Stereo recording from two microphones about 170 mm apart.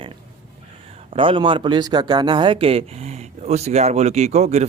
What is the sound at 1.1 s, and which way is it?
Speech, 30° right (ahead or behind).